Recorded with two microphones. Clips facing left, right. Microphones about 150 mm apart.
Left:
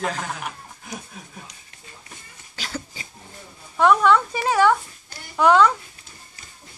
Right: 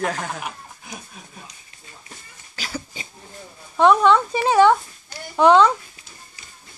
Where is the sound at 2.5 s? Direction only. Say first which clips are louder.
Right 1 dB; 5° right (ahead or behind).